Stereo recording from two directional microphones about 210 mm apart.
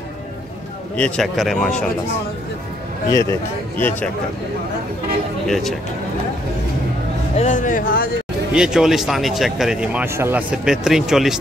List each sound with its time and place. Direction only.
0.9 s speech: 5° left (ahead or behind)
3.1 s speech: 15° left (ahead or behind)
5.5 s speech: centre (ahead or behind)
7.3 s speech: 35° left (ahead or behind)
8.5 s speech: 5° right (ahead or behind)